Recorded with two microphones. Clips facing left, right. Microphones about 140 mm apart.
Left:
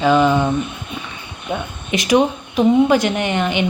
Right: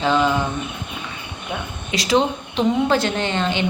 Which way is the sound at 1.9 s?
15° left (ahead or behind).